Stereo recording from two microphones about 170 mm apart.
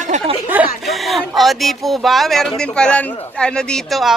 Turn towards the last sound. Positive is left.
turn(degrees=0)  # may be behind; listen again after turning